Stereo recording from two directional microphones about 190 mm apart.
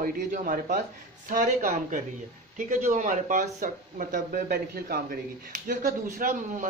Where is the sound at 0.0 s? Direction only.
45° right (ahead or behind).